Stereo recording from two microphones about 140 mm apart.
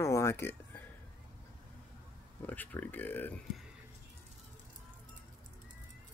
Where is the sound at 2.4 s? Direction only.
10° left (ahead or behind).